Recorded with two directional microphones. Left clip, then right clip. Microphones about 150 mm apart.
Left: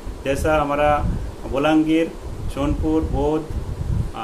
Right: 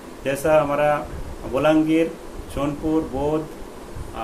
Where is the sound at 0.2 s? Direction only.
10° left (ahead or behind).